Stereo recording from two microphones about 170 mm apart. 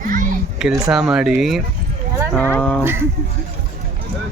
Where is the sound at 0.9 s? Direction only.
5° right (ahead or behind).